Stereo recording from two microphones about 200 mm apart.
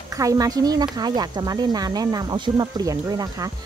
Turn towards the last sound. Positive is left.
turn(degrees=-20)  # may be behind; listen again after turning